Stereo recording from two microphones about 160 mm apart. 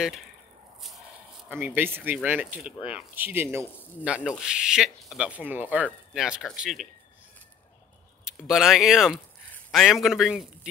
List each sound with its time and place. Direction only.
1.5 s speech: 15° right (ahead or behind)
8.3 s speech: 5° right (ahead or behind)